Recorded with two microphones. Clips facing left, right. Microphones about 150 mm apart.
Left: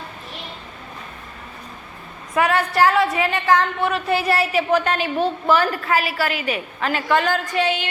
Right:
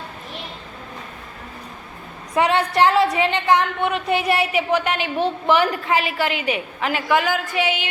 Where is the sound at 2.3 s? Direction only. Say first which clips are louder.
Right 1 dB; 25° right (ahead or behind).